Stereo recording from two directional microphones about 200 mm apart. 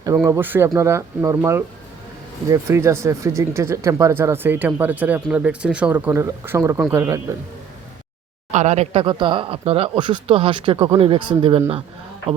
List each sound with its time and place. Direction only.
0.2 s speech: 10° right (ahead or behind)
8.5 s speech: 35° right (ahead or behind)